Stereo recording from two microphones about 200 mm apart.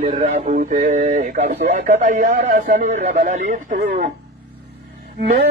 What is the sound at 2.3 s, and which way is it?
Speech, 55° right (ahead or behind).